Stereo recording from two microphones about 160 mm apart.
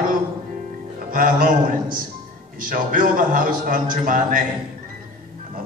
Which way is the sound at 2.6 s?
60° right (ahead or behind).